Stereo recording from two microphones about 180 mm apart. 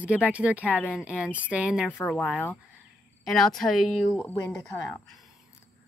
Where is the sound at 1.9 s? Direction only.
5° left (ahead or behind).